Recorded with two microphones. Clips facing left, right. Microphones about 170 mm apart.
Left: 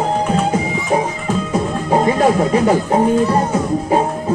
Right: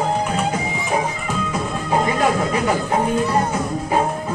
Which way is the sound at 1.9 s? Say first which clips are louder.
Left 5 dB; 30° left (ahead or behind).